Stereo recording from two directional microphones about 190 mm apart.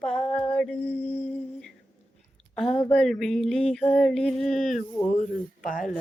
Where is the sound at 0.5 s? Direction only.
5° left (ahead or behind).